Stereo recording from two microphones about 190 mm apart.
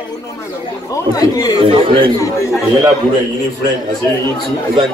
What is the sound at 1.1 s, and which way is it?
Speech, 20° left (ahead or behind).